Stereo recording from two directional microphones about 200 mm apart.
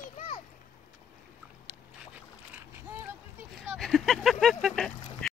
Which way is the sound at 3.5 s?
Centre (ahead or behind).